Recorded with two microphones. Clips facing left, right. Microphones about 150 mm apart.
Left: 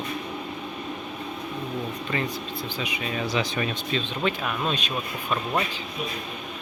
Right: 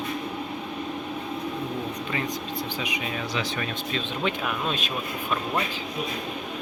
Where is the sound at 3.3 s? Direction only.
15° left (ahead or behind).